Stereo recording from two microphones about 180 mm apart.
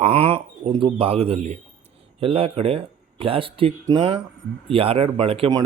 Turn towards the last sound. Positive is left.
turn(degrees=-30)  # may be behind; listen again after turning